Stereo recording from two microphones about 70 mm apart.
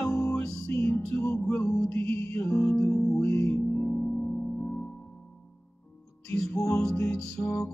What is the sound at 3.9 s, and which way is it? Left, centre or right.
Singing bowl, centre.